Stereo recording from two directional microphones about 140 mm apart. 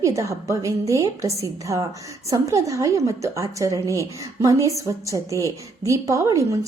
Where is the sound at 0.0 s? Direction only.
20° right (ahead or behind).